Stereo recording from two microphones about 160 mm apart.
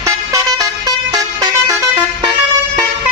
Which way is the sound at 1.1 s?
20° right (ahead or behind).